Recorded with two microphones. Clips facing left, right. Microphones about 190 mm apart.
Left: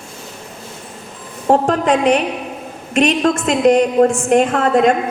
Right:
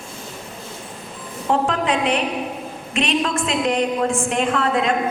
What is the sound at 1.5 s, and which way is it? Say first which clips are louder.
A woman's voice: left 6 dB; 45° left (ahead or behind).